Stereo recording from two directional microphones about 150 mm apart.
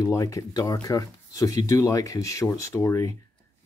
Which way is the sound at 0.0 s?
20° left (ahead or behind).